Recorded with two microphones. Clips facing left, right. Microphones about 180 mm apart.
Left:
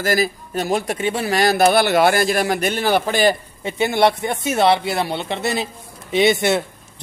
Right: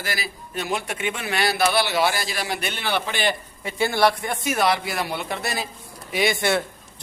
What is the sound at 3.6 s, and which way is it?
Speech, 20° left (ahead or behind).